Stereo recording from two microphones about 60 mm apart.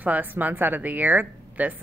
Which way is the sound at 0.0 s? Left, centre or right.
Right.